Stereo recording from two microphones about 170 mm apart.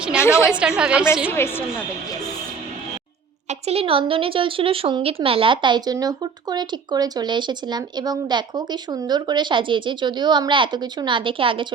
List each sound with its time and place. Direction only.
0.2 s a woman's voice: 15° left (ahead or behind)
0.6 s a woman's voice: 5° right (ahead or behind)
1.3 s a woman's voice: 15° left (ahead or behind)
3.5 s speech: 35° right (ahead or behind)